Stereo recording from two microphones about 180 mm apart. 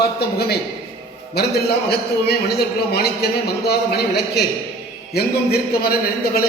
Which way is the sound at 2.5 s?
60° left (ahead or behind).